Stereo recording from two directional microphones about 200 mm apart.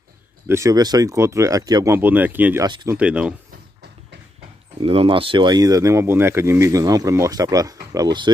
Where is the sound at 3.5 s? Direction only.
55° right (ahead or behind).